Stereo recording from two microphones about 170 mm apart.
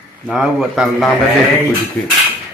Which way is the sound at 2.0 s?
15° left (ahead or behind).